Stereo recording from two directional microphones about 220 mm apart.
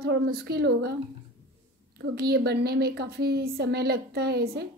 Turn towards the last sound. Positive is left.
turn(degrees=-45)  # may be behind; listen again after turning